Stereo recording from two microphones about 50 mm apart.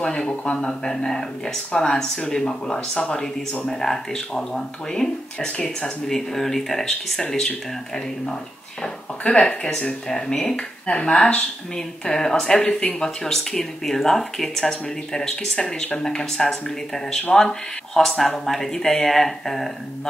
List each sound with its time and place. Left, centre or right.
0.0 s speech: centre